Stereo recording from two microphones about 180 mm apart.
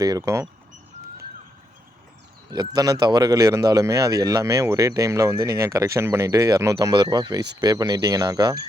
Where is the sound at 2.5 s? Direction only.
20° right (ahead or behind).